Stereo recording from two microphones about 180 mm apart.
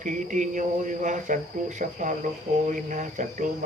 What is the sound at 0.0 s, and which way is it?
Speech, 45° right (ahead or behind).